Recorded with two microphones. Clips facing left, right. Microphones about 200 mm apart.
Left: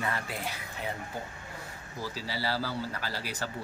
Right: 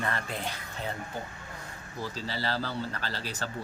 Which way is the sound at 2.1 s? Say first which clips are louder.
Even; 10° left (ahead or behind).